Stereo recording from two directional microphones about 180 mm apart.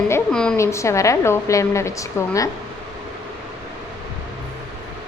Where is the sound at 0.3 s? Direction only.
5° left (ahead or behind).